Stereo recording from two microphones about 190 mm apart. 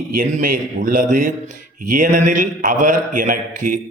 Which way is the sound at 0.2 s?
45° right (ahead or behind).